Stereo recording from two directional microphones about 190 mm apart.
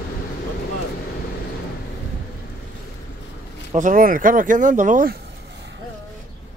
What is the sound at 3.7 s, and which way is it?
Speech, 45° right (ahead or behind).